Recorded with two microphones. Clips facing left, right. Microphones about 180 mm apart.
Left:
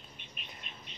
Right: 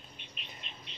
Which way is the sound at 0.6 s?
50° left (ahead or behind).